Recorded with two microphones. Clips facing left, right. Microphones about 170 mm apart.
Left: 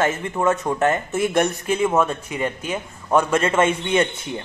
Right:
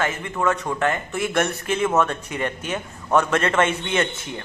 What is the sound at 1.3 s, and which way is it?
A man's voice, 15° left (ahead or behind).